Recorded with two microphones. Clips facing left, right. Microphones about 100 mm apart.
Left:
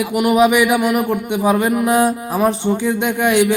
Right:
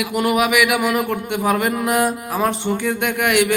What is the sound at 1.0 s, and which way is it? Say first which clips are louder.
A man's voice: left 3 dB; 15° left (ahead or behind).